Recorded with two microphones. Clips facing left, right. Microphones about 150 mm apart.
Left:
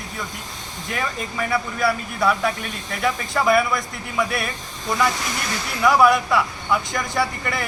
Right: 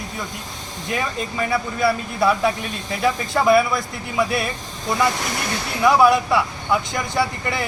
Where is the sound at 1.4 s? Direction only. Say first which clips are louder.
Right 1 dB; 25° right (ahead or behind).